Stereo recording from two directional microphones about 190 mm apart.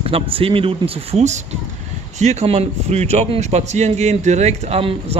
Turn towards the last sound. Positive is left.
turn(degrees=-30)  # may be behind; listen again after turning